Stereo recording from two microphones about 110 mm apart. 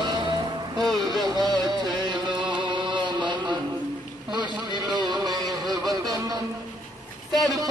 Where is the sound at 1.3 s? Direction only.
40° right (ahead or behind).